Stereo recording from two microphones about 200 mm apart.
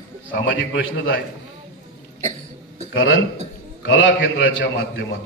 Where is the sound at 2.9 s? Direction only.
80° left.